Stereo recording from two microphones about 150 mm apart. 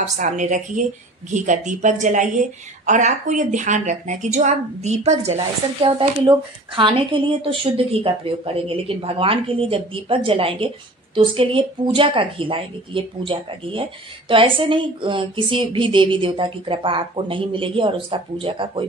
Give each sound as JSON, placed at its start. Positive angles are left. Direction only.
{"t": 0.0, "sound": "a woman's voice", "side_deg": -55}